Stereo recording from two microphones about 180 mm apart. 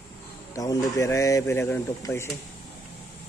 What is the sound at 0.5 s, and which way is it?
Speech, 20° left (ahead or behind).